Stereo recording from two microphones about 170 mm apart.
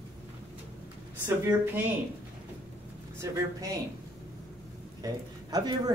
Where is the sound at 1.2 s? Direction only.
15° right (ahead or behind).